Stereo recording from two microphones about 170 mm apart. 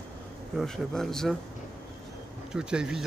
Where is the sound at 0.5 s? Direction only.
Centre (ahead or behind).